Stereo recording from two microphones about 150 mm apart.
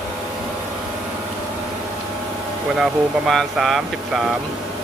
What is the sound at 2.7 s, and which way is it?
Speech, centre (ahead or behind).